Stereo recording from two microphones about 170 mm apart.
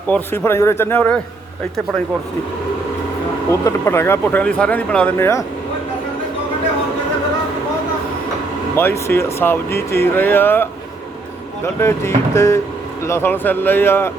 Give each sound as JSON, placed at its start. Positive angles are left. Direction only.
{"t": 0.1, "sound": "speech", "side_deg": 15}
{"t": 3.5, "sound": "speech", "side_deg": 15}
{"t": 8.7, "sound": "speech", "side_deg": 15}